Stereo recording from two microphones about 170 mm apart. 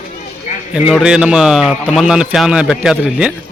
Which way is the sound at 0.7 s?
5° right (ahead or behind).